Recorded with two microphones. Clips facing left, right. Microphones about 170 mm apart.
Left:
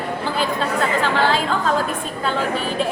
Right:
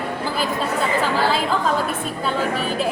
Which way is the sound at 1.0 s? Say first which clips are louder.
Left 1 dB; 5° right (ahead or behind).